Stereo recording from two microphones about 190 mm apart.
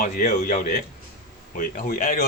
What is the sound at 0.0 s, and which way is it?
A man's voice, 45° left (ahead or behind).